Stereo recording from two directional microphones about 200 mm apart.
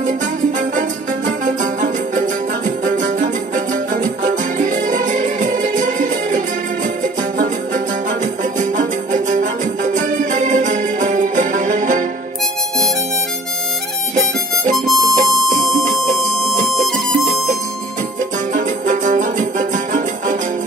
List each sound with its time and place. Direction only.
0.0 s music: 40° right (ahead or behind)
14.9 s music: centre (ahead or behind)
18.5 s music: 40° right (ahead or behind)